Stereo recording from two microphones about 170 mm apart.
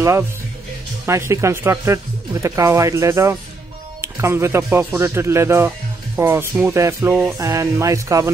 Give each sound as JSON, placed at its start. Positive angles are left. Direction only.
{"t": 1.0, "sound": "speech", "side_deg": -15}